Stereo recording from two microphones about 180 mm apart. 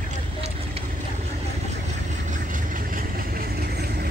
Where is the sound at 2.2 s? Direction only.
45° right (ahead or behind); by 4.1 s 60° right (ahead or behind).